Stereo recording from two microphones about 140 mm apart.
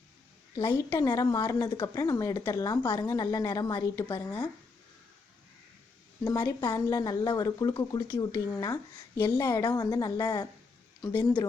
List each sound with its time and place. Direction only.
0.5 s a woman's voice: 30° left (ahead or behind)
6.2 s speech: 30° left (ahead or behind)